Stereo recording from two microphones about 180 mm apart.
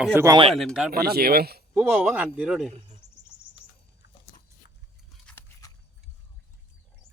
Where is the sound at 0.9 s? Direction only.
60° right (ahead or behind).